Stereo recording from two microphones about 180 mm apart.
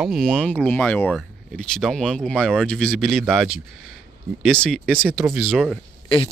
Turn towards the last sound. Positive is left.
turn(degrees=30)  # may be behind; listen again after turning